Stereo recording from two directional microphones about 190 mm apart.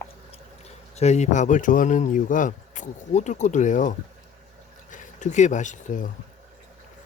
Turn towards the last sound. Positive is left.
turn(degrees=40)  # may be behind; listen again after turning